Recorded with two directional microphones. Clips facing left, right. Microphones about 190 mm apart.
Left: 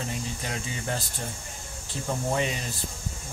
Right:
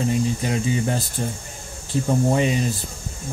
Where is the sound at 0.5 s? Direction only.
15° right (ahead or behind).